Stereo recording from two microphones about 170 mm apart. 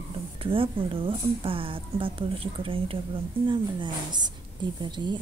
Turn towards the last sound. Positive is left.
turn(degrees=-25)  # may be behind; listen again after turning